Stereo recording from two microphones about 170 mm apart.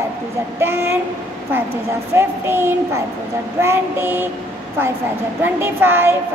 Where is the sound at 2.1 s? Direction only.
15° right (ahead or behind).